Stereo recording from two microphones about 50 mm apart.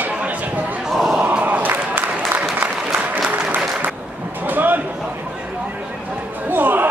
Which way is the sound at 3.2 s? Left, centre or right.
Right.